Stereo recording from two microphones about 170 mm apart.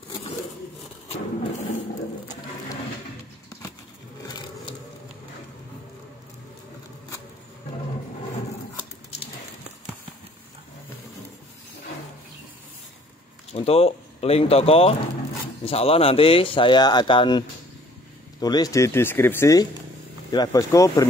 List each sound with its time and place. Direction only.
13.5 s speech: 35° left (ahead or behind); by 21.1 s 20° left (ahead or behind)